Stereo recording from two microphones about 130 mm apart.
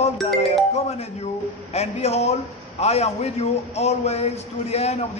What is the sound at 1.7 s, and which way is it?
A man's voice, 55° left (ahead or behind).